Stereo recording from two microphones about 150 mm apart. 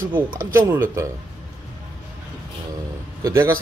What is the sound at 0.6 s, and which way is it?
Speech, 15° right (ahead or behind).